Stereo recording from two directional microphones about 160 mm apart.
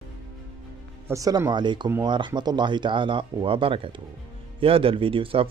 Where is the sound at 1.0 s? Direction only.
20° right (ahead or behind).